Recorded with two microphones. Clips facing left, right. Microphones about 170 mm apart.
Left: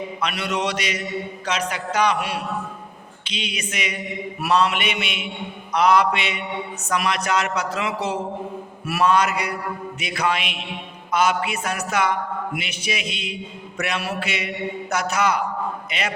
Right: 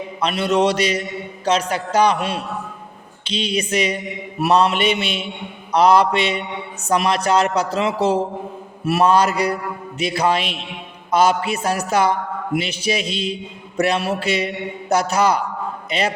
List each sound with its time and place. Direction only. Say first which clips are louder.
0.2 s a man's voice: right 8 dB; 30° right (ahead or behind)